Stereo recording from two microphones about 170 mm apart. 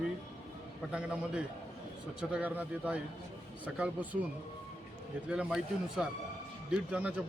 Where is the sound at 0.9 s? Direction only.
5° right (ahead or behind).